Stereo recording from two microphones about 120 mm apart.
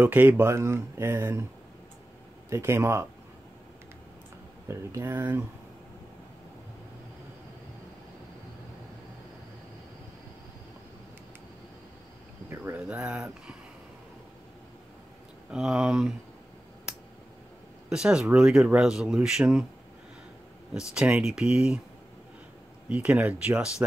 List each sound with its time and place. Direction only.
0.0 s speech: 15° right (ahead or behind)
2.5 s speech: 20° right (ahead or behind)
4.6 s speech: 20° right (ahead or behind)
12.4 s speech: 20° right (ahead or behind)
12.8 s speech: 10° right (ahead or behind)
15.5 s speech: 5° right (ahead or behind)
17.8 s speech: 5° right (ahead or behind)
20.7 s speech: 5° right (ahead or behind)
22.8 s speech: 10° right (ahead or behind)